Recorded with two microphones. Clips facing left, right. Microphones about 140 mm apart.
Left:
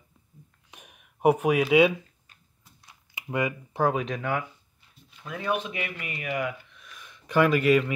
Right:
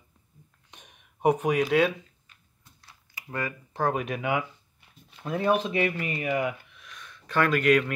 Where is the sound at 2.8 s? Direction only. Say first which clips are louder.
Left 5 dB; 15° left (ahead or behind).